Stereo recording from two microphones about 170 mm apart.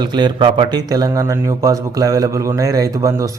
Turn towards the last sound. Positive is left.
turn(degrees=-20)  # may be behind; listen again after turning